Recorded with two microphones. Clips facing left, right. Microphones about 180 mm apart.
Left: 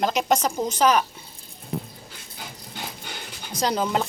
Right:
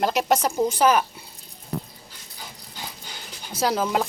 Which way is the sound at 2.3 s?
60° left (ahead or behind).